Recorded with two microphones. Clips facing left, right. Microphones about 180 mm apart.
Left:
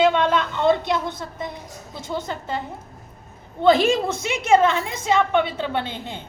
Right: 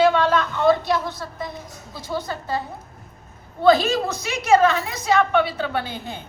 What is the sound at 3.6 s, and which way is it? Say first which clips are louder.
A woman's voice: even; 25° left (ahead or behind).